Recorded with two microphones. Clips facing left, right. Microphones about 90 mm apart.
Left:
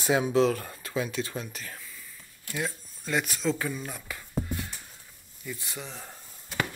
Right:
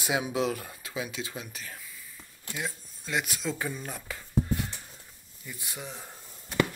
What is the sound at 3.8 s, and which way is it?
Speech, 40° right (ahead or behind).